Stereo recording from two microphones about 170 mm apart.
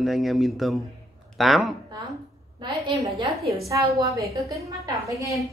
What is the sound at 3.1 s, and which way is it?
Speech, centre (ahead or behind).